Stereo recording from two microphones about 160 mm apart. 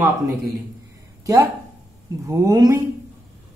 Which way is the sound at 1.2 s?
20° right (ahead or behind).